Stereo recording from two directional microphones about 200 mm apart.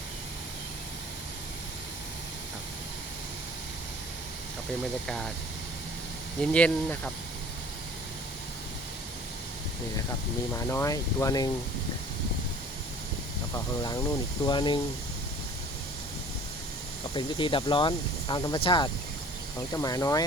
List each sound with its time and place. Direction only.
4.8 s speech: centre (ahead or behind)
6.4 s speech: 5° left (ahead or behind)
10.5 s speech: 15° left (ahead or behind)
14.4 s speech: 20° left (ahead or behind)
17.2 s speech: 25° left (ahead or behind)